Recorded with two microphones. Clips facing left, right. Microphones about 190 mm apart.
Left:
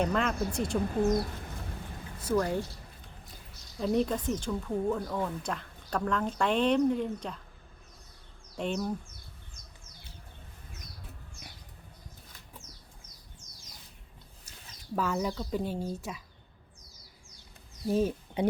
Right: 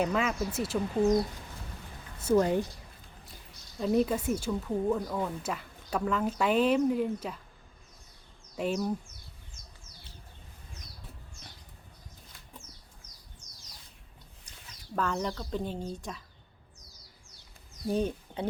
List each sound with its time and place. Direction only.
0.0 s speech: 5° right (ahead or behind)
2.2 s speech: 25° right (ahead or behind)
3.8 s speech: centre (ahead or behind)
8.5 s speech: 5° right (ahead or behind)
14.9 s speech: 5° left (ahead or behind)
17.8 s speech: centre (ahead or behind)